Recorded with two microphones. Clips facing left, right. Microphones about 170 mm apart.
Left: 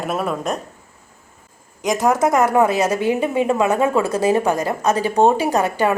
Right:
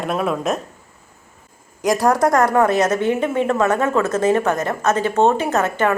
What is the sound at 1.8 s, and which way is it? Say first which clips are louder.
A woman's voice: right 1 dB; centre (ahead or behind).